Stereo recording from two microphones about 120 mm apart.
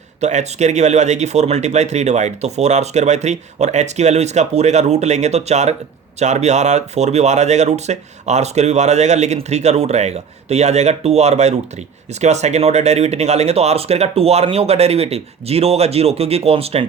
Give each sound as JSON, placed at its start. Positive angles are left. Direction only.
{"t": 0.2, "sound": "speech", "side_deg": -75}